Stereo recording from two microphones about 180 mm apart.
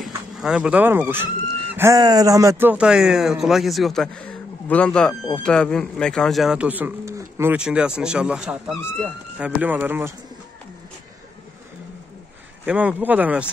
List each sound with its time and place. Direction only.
0.0 s speech: 5° right (ahead or behind)
12.6 s speech: 10° right (ahead or behind)